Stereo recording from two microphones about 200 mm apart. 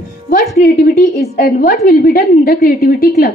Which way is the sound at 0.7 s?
45° left (ahead or behind).